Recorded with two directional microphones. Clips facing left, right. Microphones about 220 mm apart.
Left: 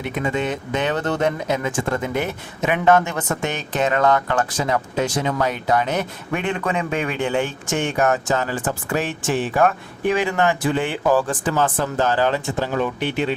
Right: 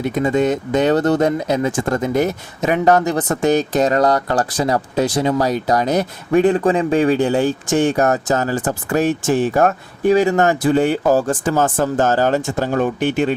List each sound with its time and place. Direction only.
0.0 s speech: 40° right (ahead or behind)